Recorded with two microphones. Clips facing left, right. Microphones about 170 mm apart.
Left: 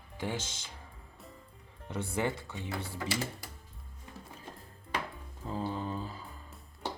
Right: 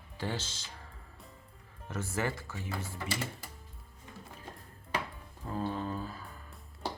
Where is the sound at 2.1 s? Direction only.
20° left (ahead or behind).